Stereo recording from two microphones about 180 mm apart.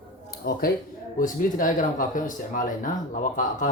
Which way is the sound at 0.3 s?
55° left (ahead or behind).